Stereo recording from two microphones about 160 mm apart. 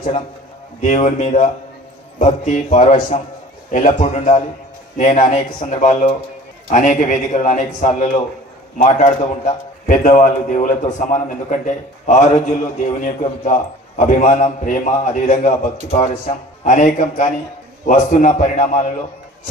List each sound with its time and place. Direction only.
0.7 s a man's voice: 50° left (ahead or behind)